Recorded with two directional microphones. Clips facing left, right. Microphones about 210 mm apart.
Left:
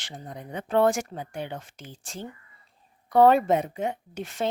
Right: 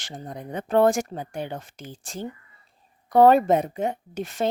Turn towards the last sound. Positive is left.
turn(degrees=-40)  # may be behind; listen again after turning